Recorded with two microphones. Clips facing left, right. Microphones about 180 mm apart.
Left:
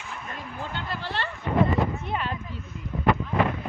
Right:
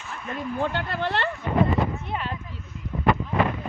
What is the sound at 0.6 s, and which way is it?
Speech, 65° right (ahead or behind).